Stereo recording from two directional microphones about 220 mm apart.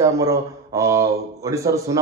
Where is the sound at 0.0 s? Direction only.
15° right (ahead or behind).